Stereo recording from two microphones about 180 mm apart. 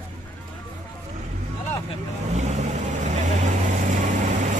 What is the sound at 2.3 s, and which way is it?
Vehicle, 40° right (ahead or behind).